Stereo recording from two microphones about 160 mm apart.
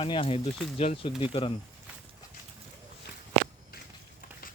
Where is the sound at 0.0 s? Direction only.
35° left (ahead or behind).